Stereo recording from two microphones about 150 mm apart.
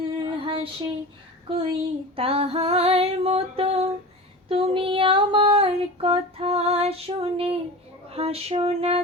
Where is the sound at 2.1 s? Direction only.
40° right (ahead or behind).